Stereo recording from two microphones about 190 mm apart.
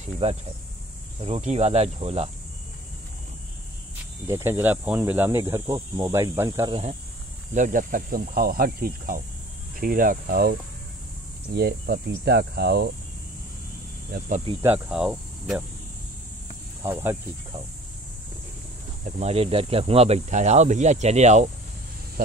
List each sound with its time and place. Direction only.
0.0 s speech: 35° right (ahead or behind)
4.3 s cricket: 15° right (ahead or behind)
6.7 s speech: 35° right (ahead or behind)
7.5 s cricket: 45° right (ahead or behind)
11.5 s speech: 55° right (ahead or behind)
14.6 s speech: 5° right (ahead or behind)
16.8 s cricket: 10° right (ahead or behind)
19.0 s speech: 35° right (ahead or behind)